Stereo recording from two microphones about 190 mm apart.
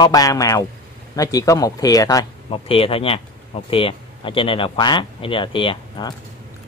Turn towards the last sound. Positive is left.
turn(degrees=25)  # may be behind; listen again after turning